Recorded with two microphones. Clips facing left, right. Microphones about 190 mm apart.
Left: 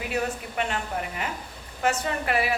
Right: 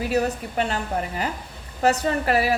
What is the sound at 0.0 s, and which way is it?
A woman's voice, 35° right (ahead or behind).